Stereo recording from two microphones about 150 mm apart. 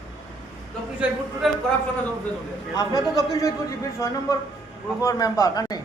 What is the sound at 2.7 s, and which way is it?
A man's voice, 25° left (ahead or behind).